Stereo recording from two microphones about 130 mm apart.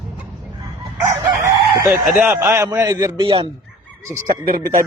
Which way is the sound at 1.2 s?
25° right (ahead or behind).